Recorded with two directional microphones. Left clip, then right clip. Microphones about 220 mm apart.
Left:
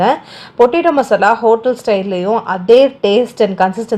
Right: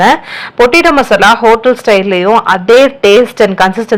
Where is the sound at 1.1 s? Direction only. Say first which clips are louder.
Right 5 dB; 15° right (ahead or behind).